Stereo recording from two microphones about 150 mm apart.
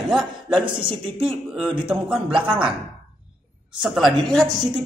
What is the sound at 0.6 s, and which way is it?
Speech, 35° right (ahead or behind).